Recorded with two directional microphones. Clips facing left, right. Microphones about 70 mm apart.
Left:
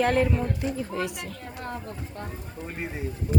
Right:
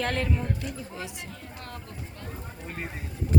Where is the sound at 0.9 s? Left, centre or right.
Left.